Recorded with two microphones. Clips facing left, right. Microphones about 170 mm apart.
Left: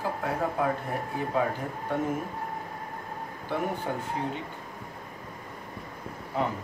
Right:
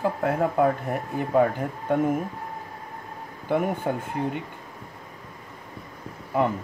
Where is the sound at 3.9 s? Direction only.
55° right (ahead or behind).